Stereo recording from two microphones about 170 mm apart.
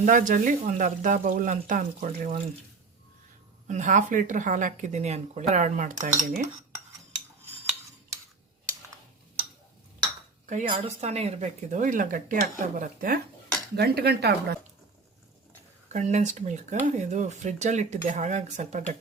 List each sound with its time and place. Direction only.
0.0 s speech: 50° right (ahead or behind)
3.7 s speech: 45° right (ahead or behind)
10.4 s a woman's voice: 45° right (ahead or behind)
13.7 s speech: 70° right (ahead or behind)
15.9 s speech: 45° right (ahead or behind)